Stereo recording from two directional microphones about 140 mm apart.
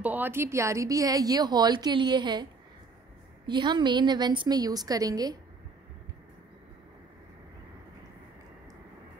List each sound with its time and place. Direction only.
0.0 s a woman's voice: 15° right (ahead or behind); by 2.4 s 30° right (ahead or behind)
3.4 s a woman's voice: 35° right (ahead or behind)